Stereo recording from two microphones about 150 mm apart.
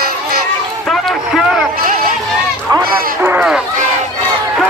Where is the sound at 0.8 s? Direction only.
Centre (ahead or behind).